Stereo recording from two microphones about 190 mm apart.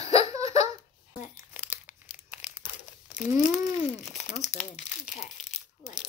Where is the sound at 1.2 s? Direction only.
40° left (ahead or behind).